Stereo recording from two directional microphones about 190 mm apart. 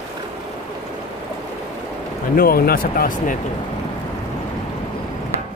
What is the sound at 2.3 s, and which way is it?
Speech, 50° left (ahead or behind).